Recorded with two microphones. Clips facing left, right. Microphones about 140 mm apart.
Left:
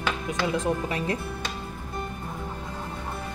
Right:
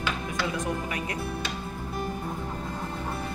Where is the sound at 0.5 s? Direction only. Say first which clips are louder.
Left 4 dB; 30° left (ahead or behind).